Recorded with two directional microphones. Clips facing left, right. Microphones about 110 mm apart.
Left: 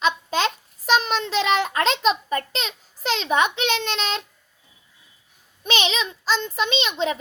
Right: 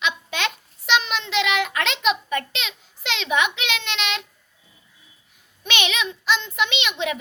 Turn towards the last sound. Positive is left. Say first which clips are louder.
# left 2 dB
turn(degrees=35)  # may be behind; listen again after turning